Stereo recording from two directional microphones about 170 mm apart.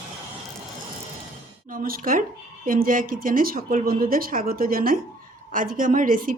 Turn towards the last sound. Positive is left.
turn(degrees=-55)  # may be behind; listen again after turning